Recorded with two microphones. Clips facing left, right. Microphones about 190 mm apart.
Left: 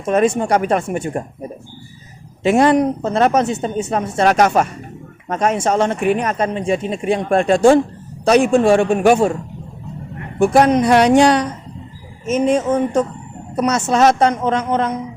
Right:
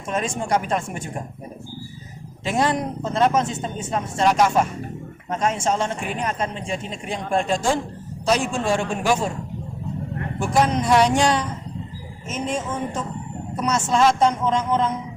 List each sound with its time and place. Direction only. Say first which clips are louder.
0.0 s speech: left 10 dB; 65° left (ahead or behind)
2.4 s a woman's voice: left 9 dB; 65° left (ahead or behind)
10.4 s a woman's voice: left 8 dB; 60° left (ahead or behind)